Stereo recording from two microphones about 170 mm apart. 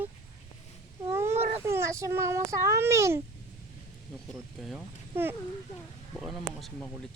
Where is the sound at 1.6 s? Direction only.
15° right (ahead or behind).